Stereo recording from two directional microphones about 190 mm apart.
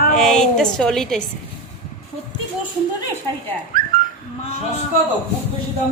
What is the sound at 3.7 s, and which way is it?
Dog, 45° right (ahead or behind).